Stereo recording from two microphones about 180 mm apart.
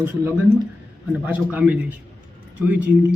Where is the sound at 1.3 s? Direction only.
10° right (ahead or behind).